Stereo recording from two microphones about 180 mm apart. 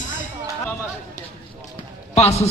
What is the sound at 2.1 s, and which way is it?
Speech, 35° left (ahead or behind).